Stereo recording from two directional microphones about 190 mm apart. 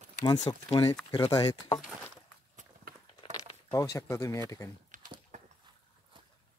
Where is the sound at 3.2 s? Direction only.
20° left (ahead or behind).